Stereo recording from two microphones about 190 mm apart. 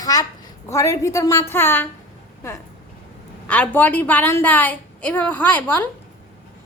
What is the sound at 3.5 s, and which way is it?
A woman's voice, 10° left (ahead or behind).